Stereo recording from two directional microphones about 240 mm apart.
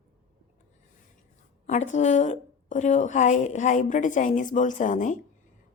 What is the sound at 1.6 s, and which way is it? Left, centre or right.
A woman's voice, left.